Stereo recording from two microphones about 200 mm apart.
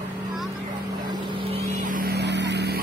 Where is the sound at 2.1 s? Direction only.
60° right (ahead or behind).